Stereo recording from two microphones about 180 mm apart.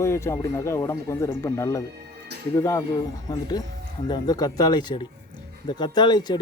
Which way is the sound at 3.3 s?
20° left (ahead or behind).